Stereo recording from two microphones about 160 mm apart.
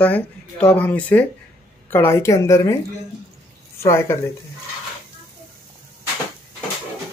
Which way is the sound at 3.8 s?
15° left (ahead or behind).